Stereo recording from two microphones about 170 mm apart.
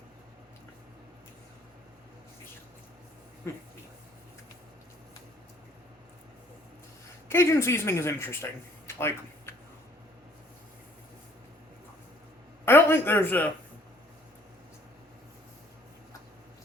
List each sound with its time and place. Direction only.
7.3 s speech: 15° left (ahead or behind)
9.0 s a sound: 15° left (ahead or behind)
12.6 s speech: 10° left (ahead or behind)